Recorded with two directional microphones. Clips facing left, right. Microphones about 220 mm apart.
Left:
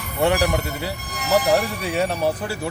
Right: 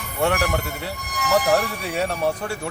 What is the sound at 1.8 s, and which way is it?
Speech, centre (ahead or behind).